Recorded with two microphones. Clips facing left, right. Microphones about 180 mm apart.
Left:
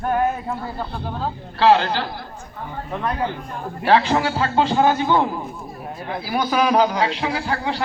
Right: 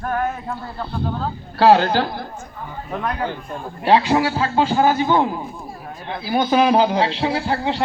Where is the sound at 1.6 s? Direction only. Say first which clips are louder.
Right 3 dB; 45° right (ahead or behind).